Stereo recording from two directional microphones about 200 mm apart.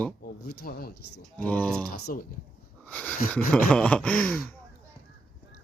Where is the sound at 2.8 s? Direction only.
5° left (ahead or behind).